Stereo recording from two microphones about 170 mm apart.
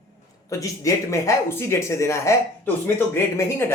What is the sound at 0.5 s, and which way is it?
Speech, 20° left (ahead or behind).